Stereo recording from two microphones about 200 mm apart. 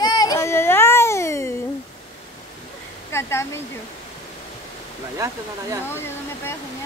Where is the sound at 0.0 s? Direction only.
20° left (ahead or behind).